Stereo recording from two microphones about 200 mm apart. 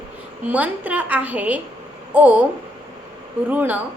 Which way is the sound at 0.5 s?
10° right (ahead or behind).